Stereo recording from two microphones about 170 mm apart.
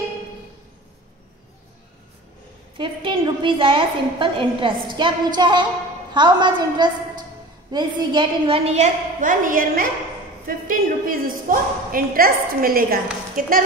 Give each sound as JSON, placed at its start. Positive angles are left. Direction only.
{"t": 2.8, "sound": "a woman's voice", "side_deg": -30}